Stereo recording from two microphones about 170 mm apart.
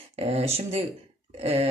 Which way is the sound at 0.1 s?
40° right (ahead or behind).